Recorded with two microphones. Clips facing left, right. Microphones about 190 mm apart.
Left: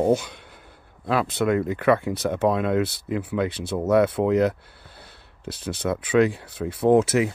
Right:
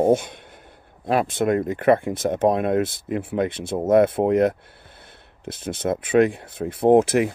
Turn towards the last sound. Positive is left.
turn(degrees=-55)  # may be behind; listen again after turning